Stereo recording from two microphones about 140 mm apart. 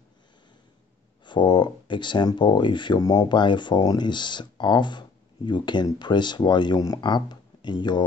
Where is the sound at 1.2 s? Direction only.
35° left (ahead or behind).